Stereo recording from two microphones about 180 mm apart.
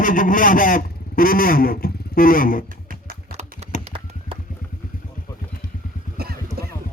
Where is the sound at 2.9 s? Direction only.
55° right (ahead or behind).